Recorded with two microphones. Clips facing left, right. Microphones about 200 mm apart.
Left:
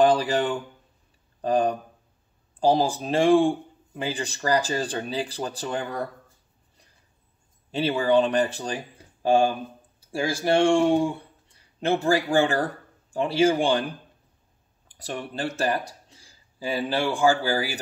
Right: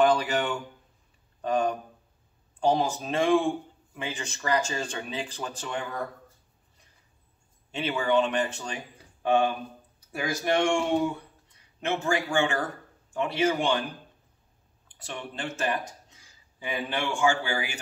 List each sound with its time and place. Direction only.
0.0 s speech: 35° left (ahead or behind)
7.7 s speech: 35° left (ahead or behind)
14.9 s speech: 35° left (ahead or behind)